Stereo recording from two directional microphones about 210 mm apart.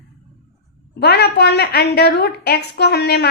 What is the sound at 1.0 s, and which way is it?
Speech, 50° left (ahead or behind).